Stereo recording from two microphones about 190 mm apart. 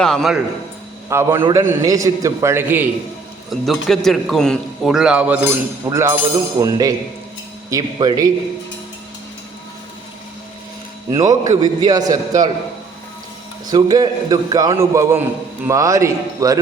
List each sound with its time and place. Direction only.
0.0 s a man's voice: 5° left (ahead or behind)
1.1 s a man's voice: 15° right (ahead or behind)
1.4 s a man's voice: 25° right (ahead or behind)
11.1 s a man's voice: 20° right (ahead or behind)
13.7 s a man's voice: 20° right (ahead or behind)